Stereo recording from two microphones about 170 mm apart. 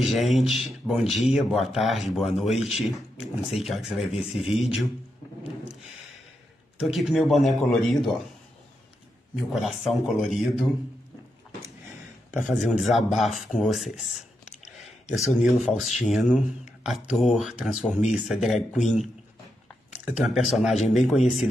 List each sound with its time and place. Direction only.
0.0 s speech: centre (ahead or behind)
6.9 s speech: centre (ahead or behind)
9.3 s speech: centre (ahead or behind)
12.3 s speech: 50° left (ahead or behind)
12.8 s speech: centre (ahead or behind)
14.8 s a sound: centre (ahead or behind)
15.3 s speech: centre (ahead or behind)
19.9 s speech: 5° right (ahead or behind)